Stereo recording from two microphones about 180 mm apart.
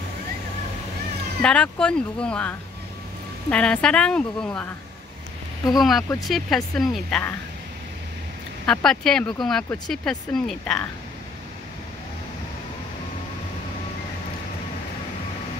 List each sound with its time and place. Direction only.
1.4 s speech: 5° left (ahead or behind)
5.8 s speech: centre (ahead or behind)
8.6 s speech: centre (ahead or behind)